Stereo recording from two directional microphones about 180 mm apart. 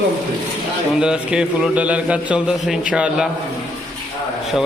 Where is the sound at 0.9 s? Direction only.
5° right (ahead or behind).